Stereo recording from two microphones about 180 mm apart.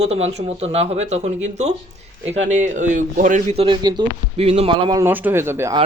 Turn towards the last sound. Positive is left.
turn(degrees=-15)  # may be behind; listen again after turning